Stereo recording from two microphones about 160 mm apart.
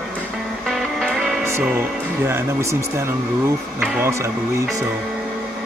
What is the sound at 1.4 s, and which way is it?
Music, 15° right (ahead or behind).